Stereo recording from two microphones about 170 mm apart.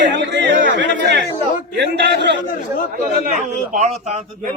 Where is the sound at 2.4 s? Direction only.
55° left (ahead or behind).